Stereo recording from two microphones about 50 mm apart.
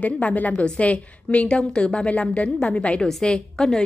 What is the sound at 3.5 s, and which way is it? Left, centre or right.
Speech, centre.